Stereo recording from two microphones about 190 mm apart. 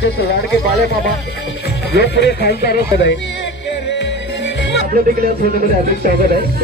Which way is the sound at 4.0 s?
70° left (ahead or behind).